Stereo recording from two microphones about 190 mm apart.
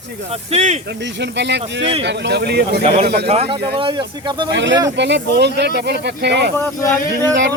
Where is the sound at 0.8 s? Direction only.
65° right (ahead or behind).